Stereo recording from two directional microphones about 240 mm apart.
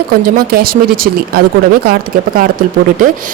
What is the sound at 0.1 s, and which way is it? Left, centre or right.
Speech, right.